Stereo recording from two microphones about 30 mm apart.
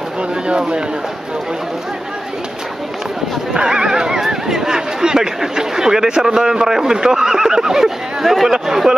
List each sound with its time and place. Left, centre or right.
0.5 s speech: right
3.6 s speech: right